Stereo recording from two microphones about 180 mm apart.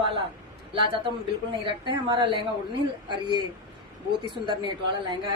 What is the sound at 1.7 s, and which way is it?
A woman's voice, 25° right (ahead or behind).